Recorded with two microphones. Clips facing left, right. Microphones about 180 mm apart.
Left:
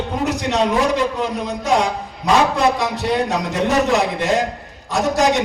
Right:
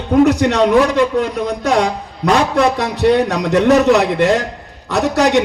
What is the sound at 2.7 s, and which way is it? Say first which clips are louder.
A man's voice: right 6 dB; 65° right (ahead or behind).